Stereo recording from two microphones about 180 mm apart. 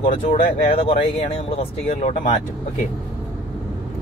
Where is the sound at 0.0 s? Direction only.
40° left (ahead or behind).